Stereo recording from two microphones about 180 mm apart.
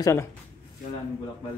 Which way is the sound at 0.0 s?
15° left (ahead or behind).